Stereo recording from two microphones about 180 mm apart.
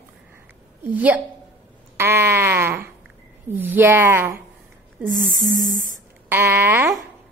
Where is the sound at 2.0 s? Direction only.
15° right (ahead or behind).